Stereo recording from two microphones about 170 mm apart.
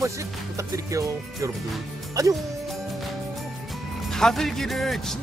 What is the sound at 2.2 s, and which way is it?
Speech, 20° right (ahead or behind).